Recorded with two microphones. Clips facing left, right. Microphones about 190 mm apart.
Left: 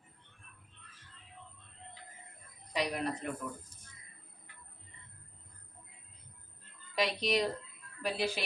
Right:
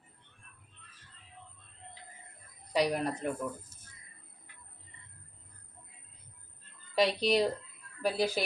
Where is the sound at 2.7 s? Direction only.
45° right (ahead or behind).